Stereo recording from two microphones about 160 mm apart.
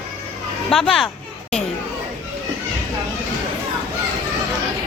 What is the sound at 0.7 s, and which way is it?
Speech, centre (ahead or behind).